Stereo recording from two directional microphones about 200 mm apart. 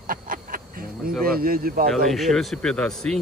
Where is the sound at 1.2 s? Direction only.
45° right (ahead or behind).